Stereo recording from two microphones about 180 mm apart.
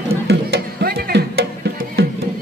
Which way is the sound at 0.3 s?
60° right (ahead or behind).